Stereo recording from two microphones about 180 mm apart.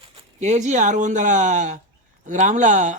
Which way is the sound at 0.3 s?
40° right (ahead or behind).